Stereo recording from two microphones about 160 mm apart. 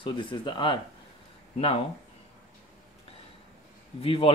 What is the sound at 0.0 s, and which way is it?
Speech, 30° left (ahead or behind).